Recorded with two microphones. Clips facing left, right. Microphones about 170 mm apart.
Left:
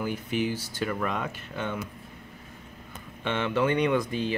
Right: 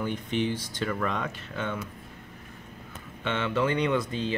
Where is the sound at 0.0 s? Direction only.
5° left (ahead or behind).